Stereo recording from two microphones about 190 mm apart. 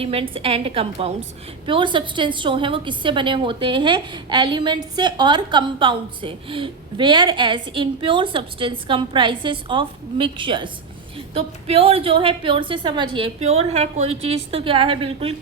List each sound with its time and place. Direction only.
0.0 s a woman's voice: 30° right (ahead or behind)